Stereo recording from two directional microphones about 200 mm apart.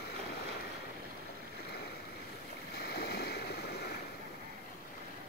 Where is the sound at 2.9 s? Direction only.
55° left (ahead or behind).